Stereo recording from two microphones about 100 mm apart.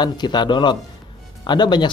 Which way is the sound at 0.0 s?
45° left (ahead or behind).